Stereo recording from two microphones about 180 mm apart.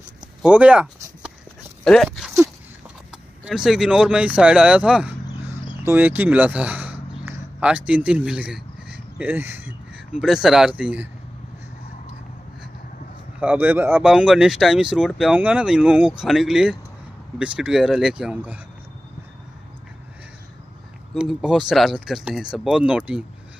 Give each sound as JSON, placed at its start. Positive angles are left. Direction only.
{"t": 0.4, "sound": "a sound", "side_deg": -5}
{"t": 3.4, "sound": "speech", "side_deg": -5}
{"t": 13.4, "sound": "speech", "side_deg": -10}
{"t": 21.1, "sound": "speech", "side_deg": 0}